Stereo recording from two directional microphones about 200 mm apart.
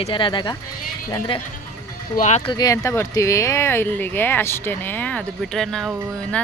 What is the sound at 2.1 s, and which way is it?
Speech, 40° left (ahead or behind).